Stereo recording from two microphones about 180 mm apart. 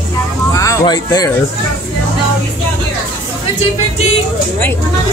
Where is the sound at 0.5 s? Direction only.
20° left (ahead or behind).